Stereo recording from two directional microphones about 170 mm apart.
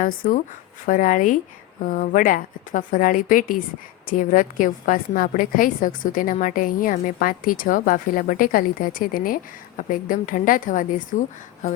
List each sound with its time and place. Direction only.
0.0 s a woman's voice: 50° left (ahead or behind)